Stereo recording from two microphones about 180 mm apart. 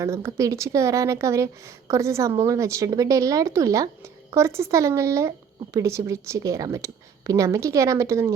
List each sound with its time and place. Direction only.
0.0 s a woman's voice: 15° right (ahead or behind)